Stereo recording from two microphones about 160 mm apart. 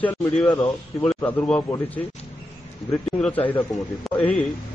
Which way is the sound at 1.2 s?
10° left (ahead or behind).